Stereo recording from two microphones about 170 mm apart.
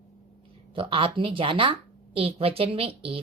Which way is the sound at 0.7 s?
30° right (ahead or behind).